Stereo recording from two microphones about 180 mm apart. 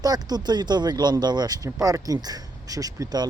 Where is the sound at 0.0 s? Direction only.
20° right (ahead or behind).